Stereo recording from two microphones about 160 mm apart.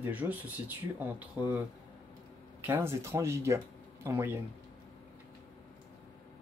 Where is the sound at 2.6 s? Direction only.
15° right (ahead or behind).